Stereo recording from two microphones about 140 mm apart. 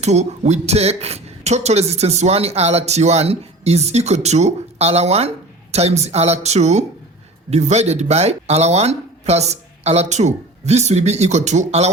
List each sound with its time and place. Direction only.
0.0 s speech: 55° right (ahead or behind)